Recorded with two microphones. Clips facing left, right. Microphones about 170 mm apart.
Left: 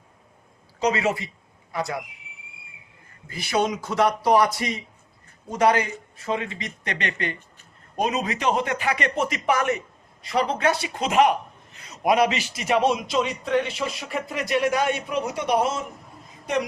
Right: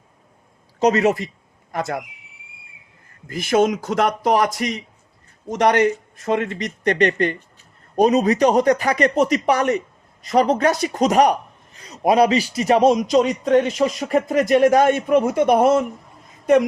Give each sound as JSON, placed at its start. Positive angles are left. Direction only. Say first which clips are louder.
{"t": 0.8, "sound": "a man's voice", "louder": "right 6 dB", "side_deg": -45}
{"t": 3.2, "sound": "a man's voice", "louder": "right 7 dB", "side_deg": -45}
{"t": 6.2, "sound": "a man's voice", "louder": "right 7 dB", "side_deg": -50}